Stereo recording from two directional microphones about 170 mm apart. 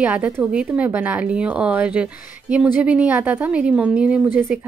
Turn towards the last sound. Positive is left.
turn(degrees=-10)  # may be behind; listen again after turning